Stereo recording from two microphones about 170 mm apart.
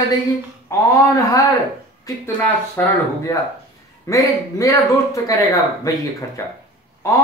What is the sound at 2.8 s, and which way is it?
Speech, 15° left (ahead or behind).